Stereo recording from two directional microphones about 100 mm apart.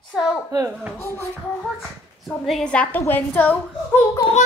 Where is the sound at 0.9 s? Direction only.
25° left (ahead or behind).